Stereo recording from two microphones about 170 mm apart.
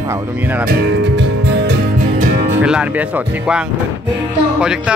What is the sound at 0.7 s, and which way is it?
Music, 80° right.